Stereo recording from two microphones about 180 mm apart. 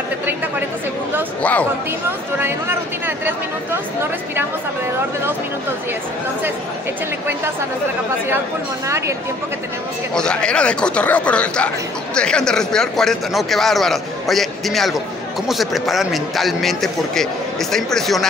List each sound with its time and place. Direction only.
1.4 s speech: 10° left (ahead or behind)
8.8 s speech: 15° right (ahead or behind)
10.1 s a man's voice: 5° left (ahead or behind)